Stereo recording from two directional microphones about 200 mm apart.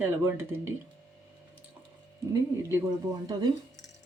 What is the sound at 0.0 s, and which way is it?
Speech, 10° right (ahead or behind).